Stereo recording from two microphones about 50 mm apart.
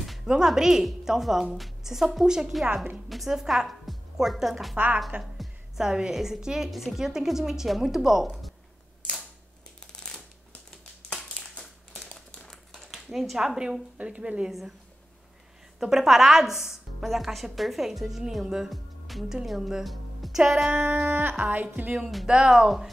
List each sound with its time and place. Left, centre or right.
0.3 s a woman's voice: centre
4.7 s speech: right
5.8 s a woman's voice: centre
9.9 s shuffling cards: centre
11.1 s a sound: centre
12.0 s crumpling: centre
12.4 s a sound: centre
13.9 s a woman's voice: right
15.8 s speech: centre
20.7 s a sound: right
21.1 s speech: right
22.3 s a woman's voice: centre